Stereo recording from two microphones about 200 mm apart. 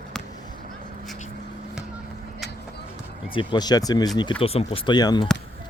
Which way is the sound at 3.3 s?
20° left (ahead or behind).